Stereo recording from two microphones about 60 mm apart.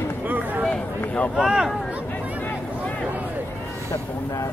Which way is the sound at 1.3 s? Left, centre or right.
Centre.